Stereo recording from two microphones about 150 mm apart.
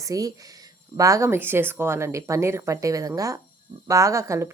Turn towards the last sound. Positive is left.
turn(degrees=-20)  # may be behind; listen again after turning